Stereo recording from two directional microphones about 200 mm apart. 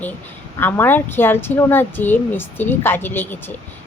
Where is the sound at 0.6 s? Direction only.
10° left (ahead or behind).